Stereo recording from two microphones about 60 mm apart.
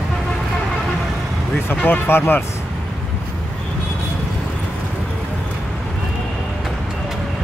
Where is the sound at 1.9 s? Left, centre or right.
Left.